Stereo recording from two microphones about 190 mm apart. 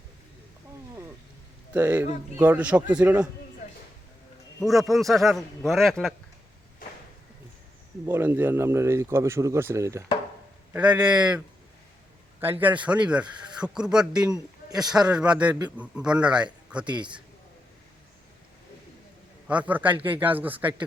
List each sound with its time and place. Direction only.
1.7 s speech: 10° right (ahead or behind)
4.6 s a man's voice: centre (ahead or behind)
8.0 s a man's voice: 10° right (ahead or behind)
14.3 s speech: 20° right (ahead or behind)
15.1 s a man's voice: 5° right (ahead or behind)
16.8 s speech: 25° right (ahead or behind)
19.5 s speech: 10° right (ahead or behind)